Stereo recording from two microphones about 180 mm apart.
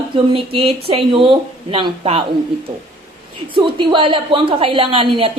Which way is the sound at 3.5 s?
25° right (ahead or behind).